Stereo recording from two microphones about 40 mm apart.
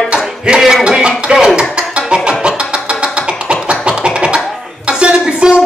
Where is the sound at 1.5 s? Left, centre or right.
Right.